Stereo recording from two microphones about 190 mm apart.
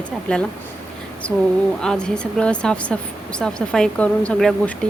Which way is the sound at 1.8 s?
5° left (ahead or behind).